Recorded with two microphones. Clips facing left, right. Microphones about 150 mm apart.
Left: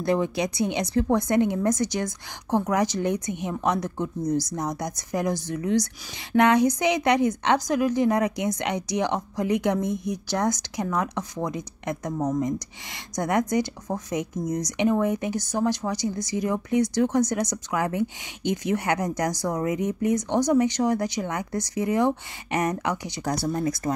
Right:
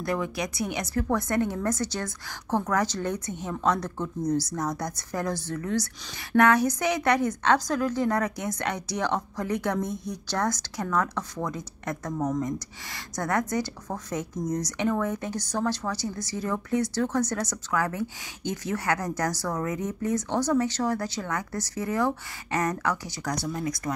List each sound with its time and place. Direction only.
0.0 s a woman's voice: 25° left (ahead or behind)
23.3 s speech: 35° left (ahead or behind)